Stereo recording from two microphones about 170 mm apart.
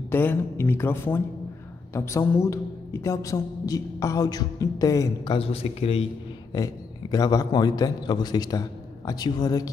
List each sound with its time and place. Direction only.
0.1 s a woman's voice: 10° left (ahead or behind); by 6.0 s 35° left (ahead or behind)
6.5 s a woman's voice: 20° left (ahead or behind)